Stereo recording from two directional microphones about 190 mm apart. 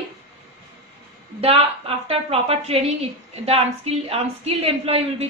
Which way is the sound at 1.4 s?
30° right (ahead or behind).